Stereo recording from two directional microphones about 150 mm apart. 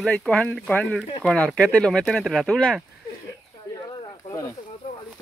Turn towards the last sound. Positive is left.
turn(degrees=20)  # may be behind; listen again after turning